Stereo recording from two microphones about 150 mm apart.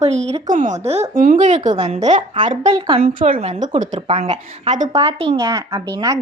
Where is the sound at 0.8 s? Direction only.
45° right (ahead or behind).